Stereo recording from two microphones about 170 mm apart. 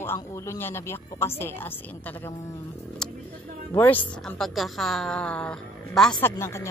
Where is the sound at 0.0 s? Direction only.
15° left (ahead or behind).